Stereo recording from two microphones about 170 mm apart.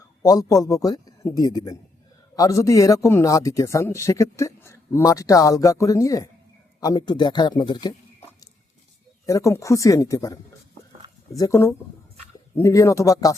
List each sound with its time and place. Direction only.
0.2 s speech: 20° left (ahead or behind)
9.2 s speech: 20° left (ahead or behind)
11.3 s speech: 20° left (ahead or behind)